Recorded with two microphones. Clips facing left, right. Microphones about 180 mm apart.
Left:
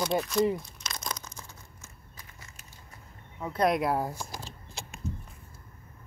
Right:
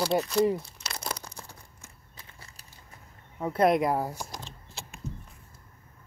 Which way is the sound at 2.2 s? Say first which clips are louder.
Right 1 dB; 30° right (ahead or behind).